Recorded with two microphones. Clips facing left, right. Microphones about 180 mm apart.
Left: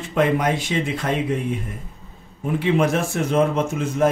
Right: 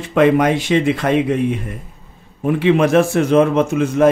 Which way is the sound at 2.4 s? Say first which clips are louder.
Right 5 dB; 85° right.